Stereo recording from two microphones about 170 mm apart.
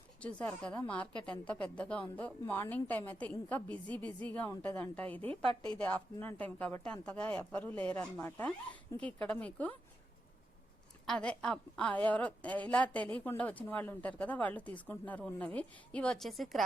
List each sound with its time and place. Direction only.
0.2 s speech: 5° left (ahead or behind)
5.3 s a woman's voice: 30° right (ahead or behind)
5.8 s speech: 10° left (ahead or behind)
11.0 s a woman's voice: 5° left (ahead or behind)